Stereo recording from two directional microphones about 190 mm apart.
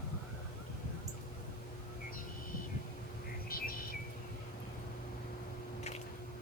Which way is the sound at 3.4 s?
50° left (ahead or behind).